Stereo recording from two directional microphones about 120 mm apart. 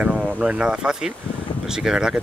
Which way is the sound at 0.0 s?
10° right (ahead or behind).